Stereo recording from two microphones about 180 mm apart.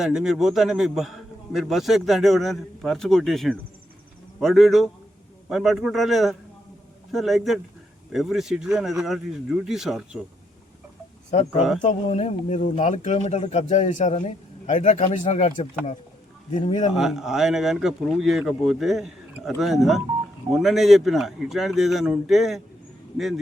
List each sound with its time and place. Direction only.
0.0 s speech: 5° right (ahead or behind)
11.3 s speech: 35° left (ahead or behind)
16.9 s speech: centre (ahead or behind)